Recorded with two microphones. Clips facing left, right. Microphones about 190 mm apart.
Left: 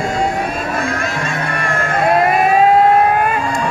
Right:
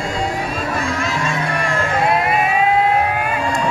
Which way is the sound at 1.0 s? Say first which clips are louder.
Even; 55° left (ahead or behind).